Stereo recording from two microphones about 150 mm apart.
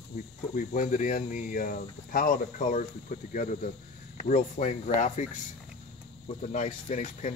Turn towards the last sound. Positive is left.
turn(degrees=55)  # may be behind; listen again after turning